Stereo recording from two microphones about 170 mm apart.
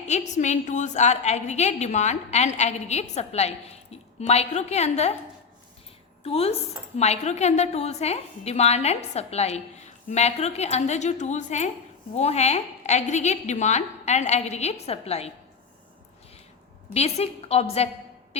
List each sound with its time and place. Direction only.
0.1 s a woman's voice: 45° left (ahead or behind)
6.2 s a woman's voice: 35° left (ahead or behind)
16.9 s a woman's voice: 40° left (ahead or behind)